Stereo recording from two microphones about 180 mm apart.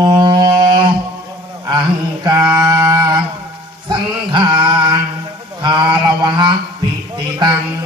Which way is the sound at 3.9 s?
25° right (ahead or behind).